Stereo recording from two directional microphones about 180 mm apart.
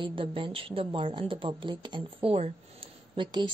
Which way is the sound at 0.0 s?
30° right (ahead or behind).